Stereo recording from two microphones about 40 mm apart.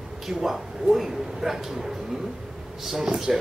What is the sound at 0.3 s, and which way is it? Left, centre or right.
A man's voice, centre.